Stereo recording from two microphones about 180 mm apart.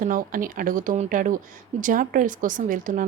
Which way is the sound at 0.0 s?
50° right (ahead or behind).